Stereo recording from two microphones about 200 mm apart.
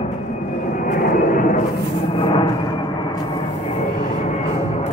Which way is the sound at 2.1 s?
30° left (ahead or behind).